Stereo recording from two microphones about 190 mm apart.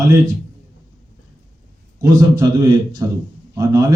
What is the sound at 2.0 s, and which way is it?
Speech, 15° right (ahead or behind).